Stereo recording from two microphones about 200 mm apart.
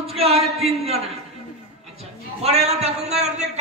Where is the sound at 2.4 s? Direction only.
30° right (ahead or behind).